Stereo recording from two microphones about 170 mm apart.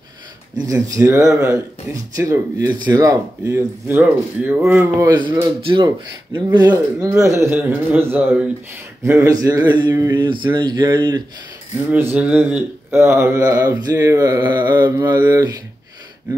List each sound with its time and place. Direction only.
0.7 s speech: 20° right (ahead or behind)
11.9 s speech: 10° right (ahead or behind)